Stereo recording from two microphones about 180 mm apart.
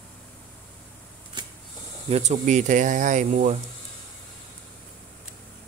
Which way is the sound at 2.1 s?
40° right (ahead or behind).